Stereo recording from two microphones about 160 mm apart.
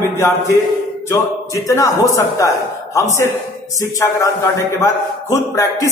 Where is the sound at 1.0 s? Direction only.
20° left (ahead or behind).